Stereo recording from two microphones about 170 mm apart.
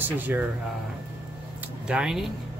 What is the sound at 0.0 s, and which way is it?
Speech, 10° right (ahead or behind).